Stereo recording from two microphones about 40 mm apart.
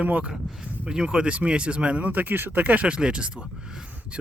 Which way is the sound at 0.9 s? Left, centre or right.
Right.